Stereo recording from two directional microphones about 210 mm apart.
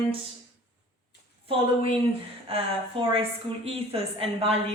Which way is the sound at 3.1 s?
25° right (ahead or behind).